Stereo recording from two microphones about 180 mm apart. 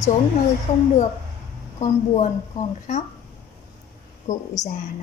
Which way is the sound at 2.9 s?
45° left (ahead or behind).